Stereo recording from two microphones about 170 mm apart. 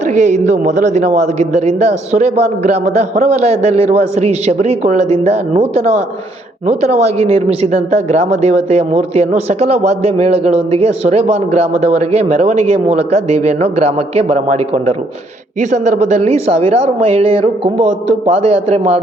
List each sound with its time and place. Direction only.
0.1 s speech: 45° right (ahead or behind)